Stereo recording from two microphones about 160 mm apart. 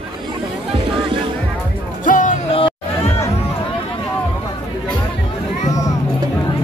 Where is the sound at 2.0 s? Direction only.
55° left (ahead or behind).